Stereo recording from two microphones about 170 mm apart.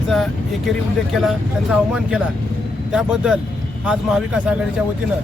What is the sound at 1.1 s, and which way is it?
Speech, centre (ahead or behind).